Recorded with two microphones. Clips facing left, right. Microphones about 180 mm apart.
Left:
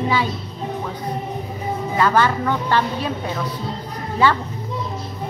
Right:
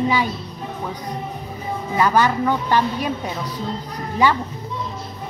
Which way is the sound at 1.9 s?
15° right (ahead or behind).